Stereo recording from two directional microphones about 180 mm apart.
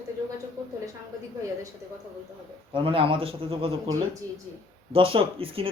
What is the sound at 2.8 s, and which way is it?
Speech, 30° right (ahead or behind).